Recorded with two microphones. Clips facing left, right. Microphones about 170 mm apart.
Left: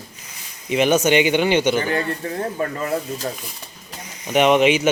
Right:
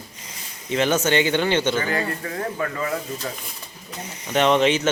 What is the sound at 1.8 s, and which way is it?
Speech, 25° left (ahead or behind).